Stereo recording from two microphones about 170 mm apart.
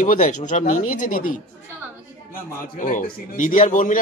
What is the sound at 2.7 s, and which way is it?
Speech, 50° left (ahead or behind).